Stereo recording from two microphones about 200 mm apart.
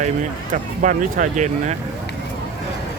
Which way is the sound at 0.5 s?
40° right (ahead or behind).